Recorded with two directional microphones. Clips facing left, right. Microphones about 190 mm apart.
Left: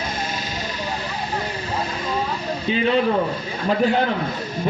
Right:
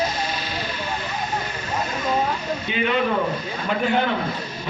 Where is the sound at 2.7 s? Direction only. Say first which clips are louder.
Left 4 dB; 35° left (ahead or behind).